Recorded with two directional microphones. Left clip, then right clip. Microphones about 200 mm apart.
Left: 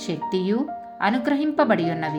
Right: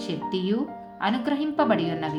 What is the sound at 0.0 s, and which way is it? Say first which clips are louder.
Speech: left 3 dB; 35° left (ahead or behind).